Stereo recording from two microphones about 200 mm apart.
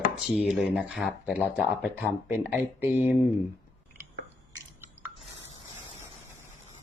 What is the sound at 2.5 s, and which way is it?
Speech, 10° right (ahead or behind).